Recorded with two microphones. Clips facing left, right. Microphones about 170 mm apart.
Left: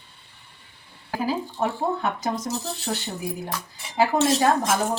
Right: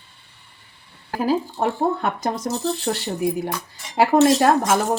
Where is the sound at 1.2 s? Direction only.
55° right (ahead or behind).